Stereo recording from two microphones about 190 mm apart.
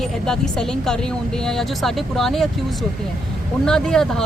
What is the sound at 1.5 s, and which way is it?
Speech, centre (ahead or behind).